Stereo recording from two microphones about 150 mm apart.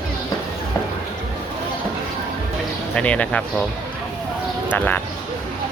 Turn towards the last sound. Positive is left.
turn(degrees=10)  # may be behind; listen again after turning